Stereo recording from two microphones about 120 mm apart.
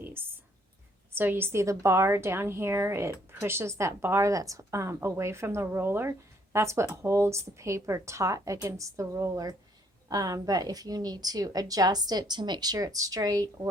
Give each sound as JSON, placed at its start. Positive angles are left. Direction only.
{"t": 0.0, "sound": "whispering", "side_deg": -20}
{"t": 1.1, "sound": "a woman's voice", "side_deg": -15}